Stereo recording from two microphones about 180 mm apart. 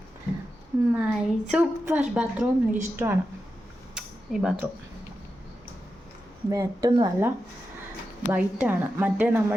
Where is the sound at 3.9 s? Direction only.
5° right (ahead or behind).